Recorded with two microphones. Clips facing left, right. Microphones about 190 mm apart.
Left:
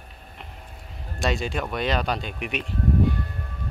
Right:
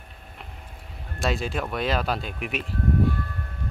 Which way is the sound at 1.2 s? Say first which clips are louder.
Left 1 dB; centre (ahead or behind).